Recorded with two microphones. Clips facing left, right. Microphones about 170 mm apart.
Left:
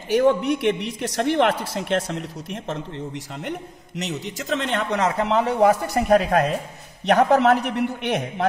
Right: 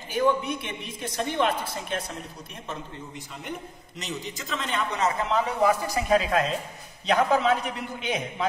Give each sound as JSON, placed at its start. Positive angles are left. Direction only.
{"t": 0.1, "sound": "a man's voice", "side_deg": 75}
{"t": 3.4, "sound": "a man's voice", "side_deg": 70}
{"t": 5.7, "sound": "a man's voice", "side_deg": 55}